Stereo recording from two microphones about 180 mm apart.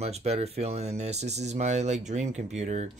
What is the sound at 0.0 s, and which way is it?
Speech, 35° right (ahead or behind).